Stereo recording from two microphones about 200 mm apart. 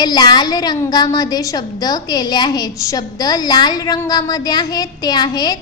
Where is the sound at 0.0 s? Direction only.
20° left (ahead or behind).